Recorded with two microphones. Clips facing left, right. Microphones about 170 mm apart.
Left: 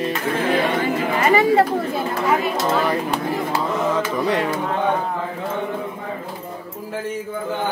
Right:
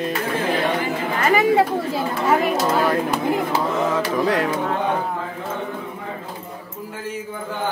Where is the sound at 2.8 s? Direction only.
Centre (ahead or behind).